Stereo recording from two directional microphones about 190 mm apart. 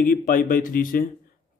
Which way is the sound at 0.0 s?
45° left (ahead or behind).